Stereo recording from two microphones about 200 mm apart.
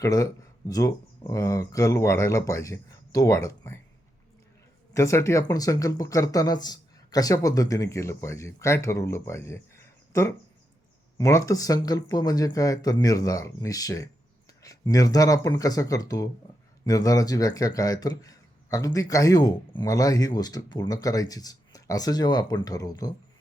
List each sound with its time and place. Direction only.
0.0 s speech: 15° left (ahead or behind)
4.9 s speech: 15° left (ahead or behind)